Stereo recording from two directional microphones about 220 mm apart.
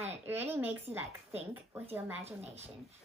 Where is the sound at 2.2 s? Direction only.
30° right (ahead or behind).